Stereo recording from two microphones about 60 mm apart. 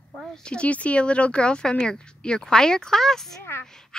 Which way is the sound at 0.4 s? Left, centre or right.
Centre.